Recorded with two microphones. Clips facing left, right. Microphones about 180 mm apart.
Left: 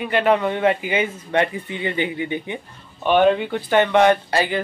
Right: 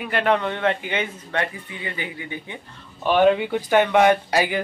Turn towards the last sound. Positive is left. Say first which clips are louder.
# left 1 dB
turn(degrees=-10)  # may be behind; listen again after turning